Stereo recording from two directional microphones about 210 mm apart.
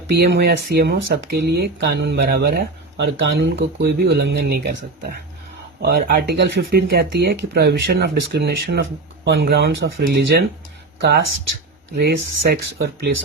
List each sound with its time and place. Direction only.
0.1 s speech: 50° right (ahead or behind)
11.9 s speech: 55° right (ahead or behind)